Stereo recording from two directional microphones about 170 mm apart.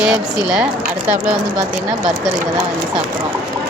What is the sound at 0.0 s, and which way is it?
Speech, 5° right (ahead or behind).